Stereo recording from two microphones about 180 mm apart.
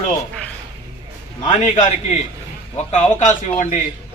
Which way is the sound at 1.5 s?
40° left (ahead or behind).